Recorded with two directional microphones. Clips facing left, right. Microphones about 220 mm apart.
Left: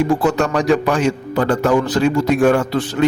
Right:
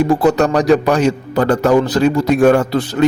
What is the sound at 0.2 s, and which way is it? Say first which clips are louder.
A man's voice: right 4 dB; 40° right (ahead or behind).